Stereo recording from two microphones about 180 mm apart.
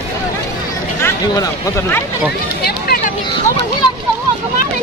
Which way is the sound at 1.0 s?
10° left (ahead or behind).